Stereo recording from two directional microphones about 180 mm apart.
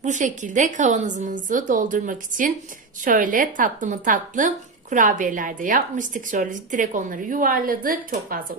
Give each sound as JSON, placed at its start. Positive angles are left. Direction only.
{"t": 0.0, "sound": "speech", "side_deg": -45}